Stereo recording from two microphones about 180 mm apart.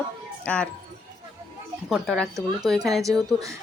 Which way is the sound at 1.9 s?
Centre (ahead or behind).